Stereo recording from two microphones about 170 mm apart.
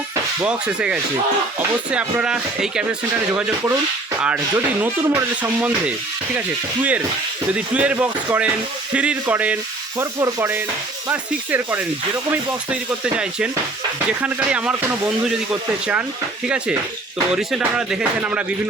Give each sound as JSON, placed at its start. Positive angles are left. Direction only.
{"t": 0.4, "sound": "speech", "side_deg": -5}
{"t": 4.2, "sound": "speech", "side_deg": -10}
{"t": 7.5, "sound": "speech", "side_deg": -5}
{"t": 14.2, "sound": "speech", "side_deg": -10}
{"t": 17.3, "sound": "speech", "side_deg": -5}